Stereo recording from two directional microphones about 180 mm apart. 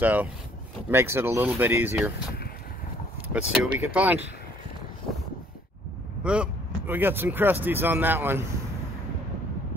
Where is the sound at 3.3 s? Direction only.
5° right (ahead or behind).